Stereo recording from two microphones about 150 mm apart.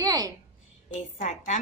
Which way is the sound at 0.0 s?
25° right (ahead or behind).